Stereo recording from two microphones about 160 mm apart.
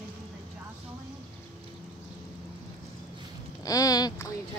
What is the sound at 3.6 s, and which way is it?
Speech, 20° left (ahead or behind).